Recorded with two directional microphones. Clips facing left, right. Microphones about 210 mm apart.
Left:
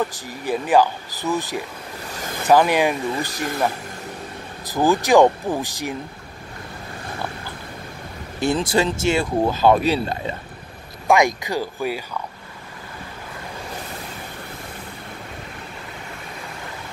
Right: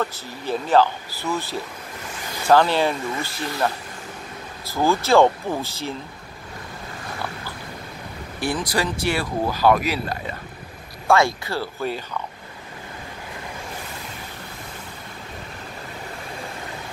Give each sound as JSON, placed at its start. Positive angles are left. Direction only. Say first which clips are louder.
{"t": 0.0, "sound": "speech", "louder": "left 2 dB", "side_deg": 15}
{"t": 8.4, "sound": "speech", "louder": "left 4 dB", "side_deg": 25}
{"t": 11.1, "sound": "speech", "louder": "left 1 dB", "side_deg": 15}